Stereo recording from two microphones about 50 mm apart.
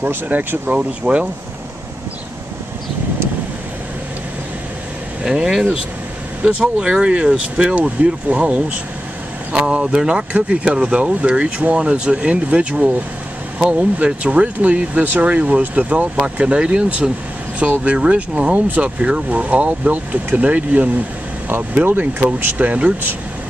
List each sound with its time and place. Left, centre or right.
0.0 s speech: right
0.7 s speech: right
5.2 s speech: centre; by 22.8 s right